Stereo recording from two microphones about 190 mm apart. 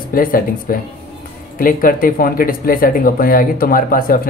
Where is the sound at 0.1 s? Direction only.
50° left (ahead or behind).